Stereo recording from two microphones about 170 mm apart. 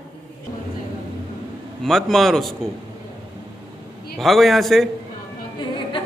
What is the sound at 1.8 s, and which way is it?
Speech, centre (ahead or behind).